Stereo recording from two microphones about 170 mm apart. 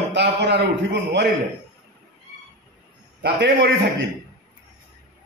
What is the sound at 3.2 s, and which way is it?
Speech, 70° right (ahead or behind).